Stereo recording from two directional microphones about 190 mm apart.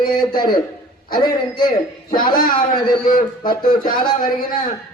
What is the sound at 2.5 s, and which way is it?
A man's voice, 25° left (ahead or behind).